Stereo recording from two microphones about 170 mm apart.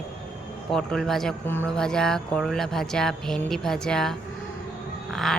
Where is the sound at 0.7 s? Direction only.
Centre (ahead or behind).